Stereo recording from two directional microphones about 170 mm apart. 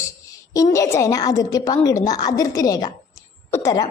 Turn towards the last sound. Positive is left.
turn(degrees=20)  # may be behind; listen again after turning